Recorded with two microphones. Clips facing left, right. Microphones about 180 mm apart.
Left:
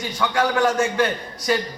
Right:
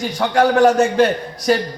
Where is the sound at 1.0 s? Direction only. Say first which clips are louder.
Right 6 dB; 65° right (ahead or behind).